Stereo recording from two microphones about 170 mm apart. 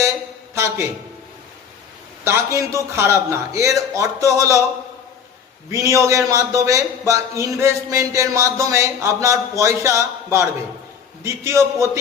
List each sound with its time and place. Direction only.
0.5 s a man's voice: 15° right (ahead or behind)
2.2 s speech: 15° right (ahead or behind)
5.7 s speech: 15° right (ahead or behind)